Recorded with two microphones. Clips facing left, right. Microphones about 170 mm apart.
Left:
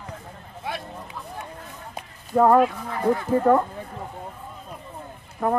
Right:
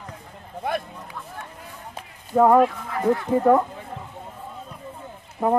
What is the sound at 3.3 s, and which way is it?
Speech, 10° right (ahead or behind).